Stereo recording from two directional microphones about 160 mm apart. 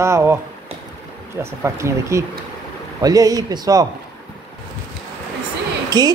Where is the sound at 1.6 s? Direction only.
20° right (ahead or behind).